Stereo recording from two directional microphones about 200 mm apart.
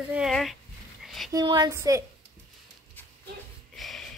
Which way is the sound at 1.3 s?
20° right (ahead or behind).